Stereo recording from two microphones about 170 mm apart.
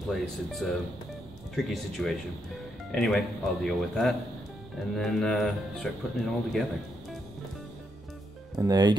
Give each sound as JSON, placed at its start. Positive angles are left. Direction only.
{"t": 0.1, "sound": "speech", "side_deg": 0}
{"t": 8.5, "sound": "speech", "side_deg": -20}